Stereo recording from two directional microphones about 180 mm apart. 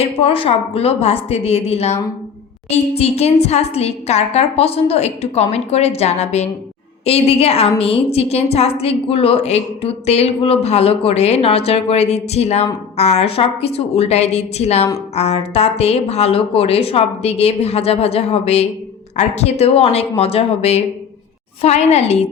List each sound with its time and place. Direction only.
0.0 s a woman's voice: 30° left (ahead or behind)
3.0 s a woman's voice: 35° left (ahead or behind)